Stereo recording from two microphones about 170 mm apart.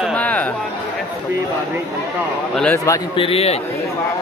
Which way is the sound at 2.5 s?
5° left (ahead or behind).